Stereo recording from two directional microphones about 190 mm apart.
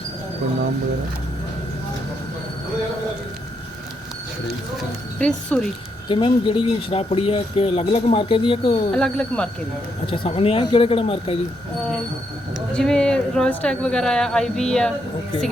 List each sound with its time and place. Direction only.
5.2 s speech: 5° left (ahead or behind)
6.1 s speech: 25° left (ahead or behind)
8.9 s speech: 5° left (ahead or behind)
10.1 s speech: 30° left (ahead or behind)
12.7 s speech: 5° left (ahead or behind)